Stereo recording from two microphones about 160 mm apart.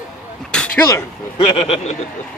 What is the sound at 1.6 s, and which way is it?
Speech, 40° left (ahead or behind).